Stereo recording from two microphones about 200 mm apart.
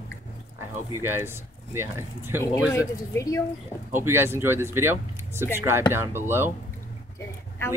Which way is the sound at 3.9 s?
10° right (ahead or behind).